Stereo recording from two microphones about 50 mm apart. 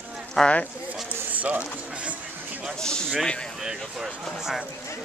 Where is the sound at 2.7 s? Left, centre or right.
Centre.